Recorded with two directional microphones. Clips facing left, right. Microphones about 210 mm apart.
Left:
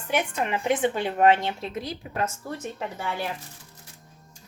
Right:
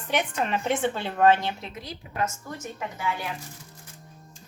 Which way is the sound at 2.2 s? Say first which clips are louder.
Even; 35° left (ahead or behind).